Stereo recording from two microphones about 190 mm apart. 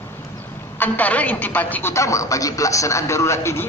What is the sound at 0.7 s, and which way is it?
A woman's voice, 10° left (ahead or behind).